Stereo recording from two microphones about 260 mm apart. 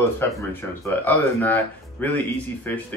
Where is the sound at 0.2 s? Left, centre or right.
Centre.